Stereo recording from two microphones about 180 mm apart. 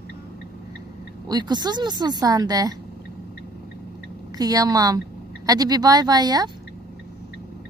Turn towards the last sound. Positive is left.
turn(degrees=-20)  # may be behind; listen again after turning